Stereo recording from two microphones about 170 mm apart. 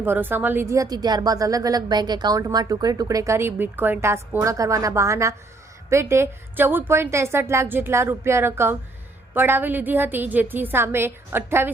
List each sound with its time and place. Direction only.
0.0 s a woman's voice: 10° right (ahead or behind)